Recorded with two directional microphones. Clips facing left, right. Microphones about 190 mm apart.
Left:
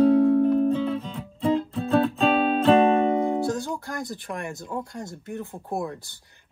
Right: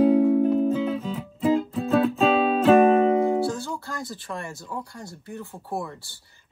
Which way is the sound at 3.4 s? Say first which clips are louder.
Left 1 dB; 20° left (ahead or behind).